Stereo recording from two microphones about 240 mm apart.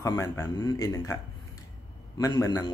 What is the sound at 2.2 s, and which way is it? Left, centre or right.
Speech, centre.